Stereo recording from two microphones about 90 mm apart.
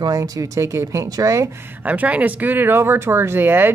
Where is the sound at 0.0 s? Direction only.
45° right (ahead or behind).